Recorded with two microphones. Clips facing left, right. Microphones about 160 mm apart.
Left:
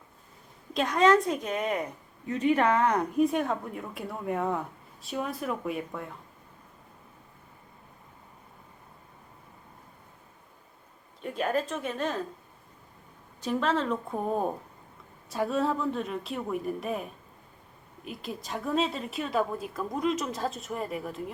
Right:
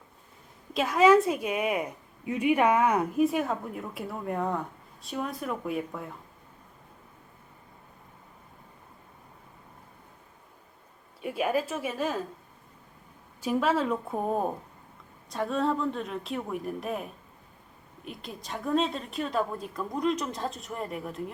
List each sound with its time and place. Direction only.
0.7 s a woman's voice: 5° right (ahead or behind)
11.2 s a woman's voice: 10° right (ahead or behind)
13.4 s a woman's voice: 10° right (ahead or behind)